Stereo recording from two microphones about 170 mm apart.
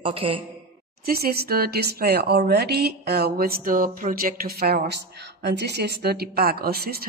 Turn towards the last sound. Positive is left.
turn(degrees=-65)  # may be behind; listen again after turning